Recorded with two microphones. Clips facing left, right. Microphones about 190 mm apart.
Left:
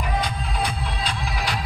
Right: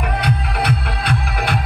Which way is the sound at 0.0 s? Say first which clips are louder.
Right 5 dB; 65° right (ahead or behind).